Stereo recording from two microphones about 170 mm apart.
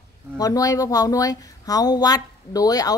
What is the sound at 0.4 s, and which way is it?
Speech, 20° left (ahead or behind).